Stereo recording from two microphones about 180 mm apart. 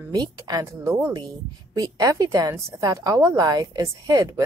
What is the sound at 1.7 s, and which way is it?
Speech, 20° right (ahead or behind).